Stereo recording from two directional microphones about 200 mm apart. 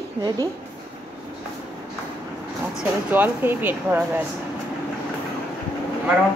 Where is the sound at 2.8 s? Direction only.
10° right (ahead or behind).